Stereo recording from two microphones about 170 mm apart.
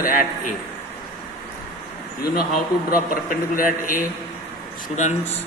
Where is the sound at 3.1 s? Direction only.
55° left (ahead or behind).